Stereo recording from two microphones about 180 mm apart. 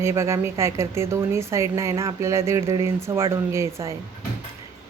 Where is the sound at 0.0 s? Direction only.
15° right (ahead or behind).